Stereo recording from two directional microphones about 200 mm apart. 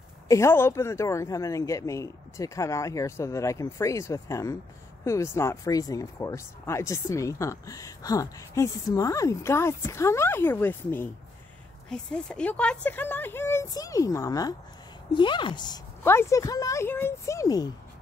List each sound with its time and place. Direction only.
0.3 s speech: 15° left (ahead or behind)